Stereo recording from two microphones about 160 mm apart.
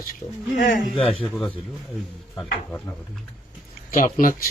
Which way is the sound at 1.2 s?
Centre (ahead or behind).